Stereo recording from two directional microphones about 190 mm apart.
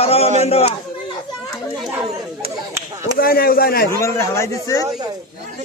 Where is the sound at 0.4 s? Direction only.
30° left (ahead or behind).